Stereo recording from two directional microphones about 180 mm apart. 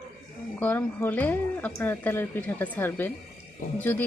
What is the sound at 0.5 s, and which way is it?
Speech, 10° left (ahead or behind).